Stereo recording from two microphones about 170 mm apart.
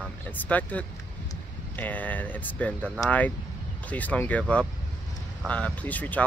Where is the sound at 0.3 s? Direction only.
10° left (ahead or behind).